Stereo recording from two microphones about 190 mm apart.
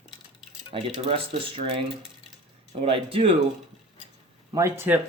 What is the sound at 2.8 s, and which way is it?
Speech, 30° right (ahead or behind).